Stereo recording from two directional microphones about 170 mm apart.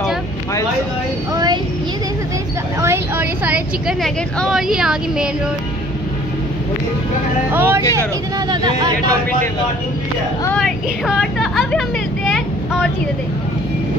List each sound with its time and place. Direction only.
1.3 s a sound: 25° right (ahead or behind)
2.8 s a woman's voice: 10° right (ahead or behind)
7.5 s speech: 10° right (ahead or behind)
8.5 s speech: 25° right (ahead or behind)
10.6 s speech: centre (ahead or behind)